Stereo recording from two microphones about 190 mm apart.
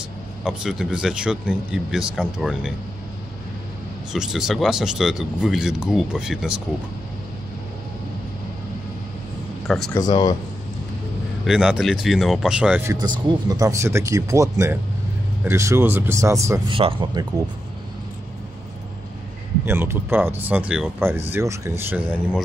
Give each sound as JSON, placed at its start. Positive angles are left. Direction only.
{"t": 0.4, "sound": "speech", "side_deg": -5}
{"t": 4.1, "sound": "speech", "side_deg": -5}
{"t": 9.9, "sound": "speech", "side_deg": 20}
{"t": 11.4, "sound": "speech", "side_deg": -5}
{"t": 12.9, "sound": "speech", "side_deg": -20}
{"t": 19.6, "sound": "speech", "side_deg": -10}